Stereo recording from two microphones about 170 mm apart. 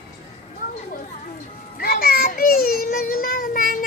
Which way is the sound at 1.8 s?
65° left (ahead or behind).